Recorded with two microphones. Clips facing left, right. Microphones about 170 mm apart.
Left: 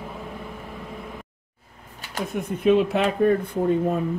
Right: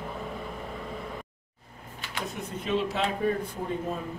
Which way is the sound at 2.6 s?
60° left (ahead or behind).